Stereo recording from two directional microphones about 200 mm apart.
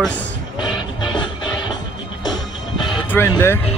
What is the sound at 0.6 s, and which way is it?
Music, 20° left (ahead or behind).